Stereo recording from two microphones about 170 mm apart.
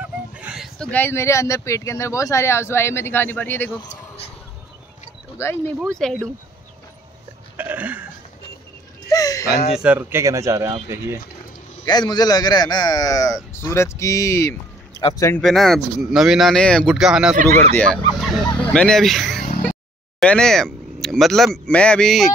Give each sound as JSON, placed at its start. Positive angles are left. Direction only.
{"t": 0.0, "sound": "a sound", "side_deg": -10}
{"t": 0.7, "sound": "speech", "side_deg": 10}
{"t": 5.4, "sound": "speech", "side_deg": 15}
{"t": 5.9, "sound": "speech", "side_deg": 5}
{"t": 7.5, "sound": "a sound", "side_deg": -10}
{"t": 9.1, "sound": "a sound", "side_deg": 20}
{"t": 9.8, "sound": "speech", "side_deg": -10}
{"t": 11.8, "sound": "a man's voice", "side_deg": 25}
{"t": 15.0, "sound": "speech", "side_deg": 30}
{"t": 15.4, "sound": "speech", "side_deg": 0}